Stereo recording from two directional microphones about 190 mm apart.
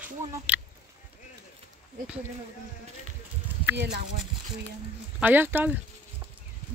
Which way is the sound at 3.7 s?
65° right (ahead or behind).